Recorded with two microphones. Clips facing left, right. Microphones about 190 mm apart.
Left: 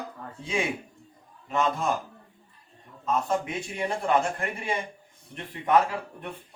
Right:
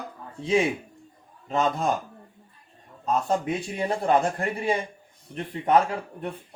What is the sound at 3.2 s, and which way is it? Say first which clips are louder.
Speech: right 3 dB; 35° right (ahead or behind).